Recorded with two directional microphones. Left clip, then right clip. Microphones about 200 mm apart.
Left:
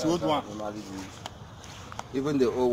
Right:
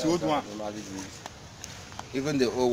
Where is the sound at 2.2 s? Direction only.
35° right (ahead or behind).